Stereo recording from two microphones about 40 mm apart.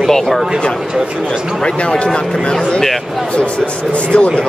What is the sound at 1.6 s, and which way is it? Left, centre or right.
Speech, left.